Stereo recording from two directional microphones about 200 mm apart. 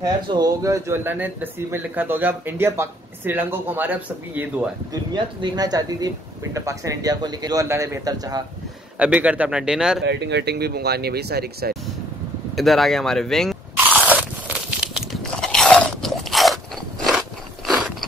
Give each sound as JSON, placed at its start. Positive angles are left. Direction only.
{"t": 0.0, "sound": "speech", "side_deg": -20}
{"t": 5.1, "sound": "speech", "side_deg": -20}
{"t": 8.9, "sound": "speech", "side_deg": -5}
{"t": 10.0, "sound": "speech", "side_deg": -60}
{"t": 12.5, "sound": "speech", "side_deg": 0}
{"t": 13.8, "sound": "biting", "side_deg": -5}
{"t": 14.8, "sound": "crunch", "side_deg": 0}